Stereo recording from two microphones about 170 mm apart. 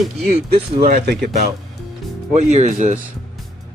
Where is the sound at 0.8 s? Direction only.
60° right (ahead or behind).